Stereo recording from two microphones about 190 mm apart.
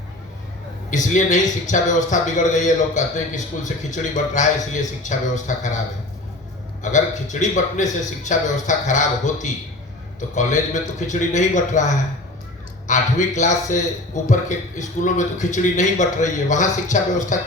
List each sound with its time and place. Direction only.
0.9 s a man's voice: 40° left (ahead or behind)
6.8 s a man's voice: 40° left (ahead or behind)